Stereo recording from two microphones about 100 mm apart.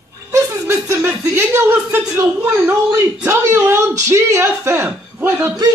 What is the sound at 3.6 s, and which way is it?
Speech, 30° right (ahead or behind).